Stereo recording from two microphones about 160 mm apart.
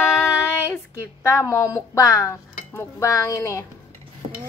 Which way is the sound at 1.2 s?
15° left (ahead or behind).